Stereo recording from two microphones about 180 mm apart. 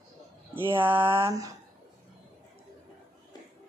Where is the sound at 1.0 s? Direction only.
30° right (ahead or behind).